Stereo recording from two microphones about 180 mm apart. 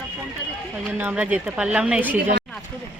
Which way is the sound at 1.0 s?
10° right (ahead or behind).